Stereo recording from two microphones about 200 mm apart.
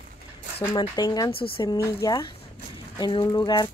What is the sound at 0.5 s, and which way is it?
Speech, 25° left (ahead or behind).